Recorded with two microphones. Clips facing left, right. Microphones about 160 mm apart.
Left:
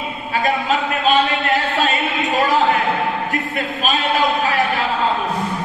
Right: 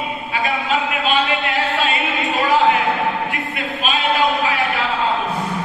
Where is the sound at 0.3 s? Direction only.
40° left (ahead or behind).